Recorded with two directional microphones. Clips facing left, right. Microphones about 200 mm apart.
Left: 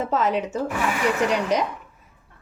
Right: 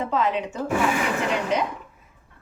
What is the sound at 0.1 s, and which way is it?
Speech, 40° left (ahead or behind).